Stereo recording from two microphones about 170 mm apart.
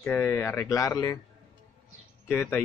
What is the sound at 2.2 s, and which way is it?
Speech, 10° left (ahead or behind).